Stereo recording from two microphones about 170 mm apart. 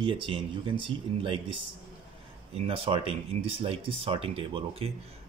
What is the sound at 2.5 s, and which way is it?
Speech, 35° right (ahead or behind).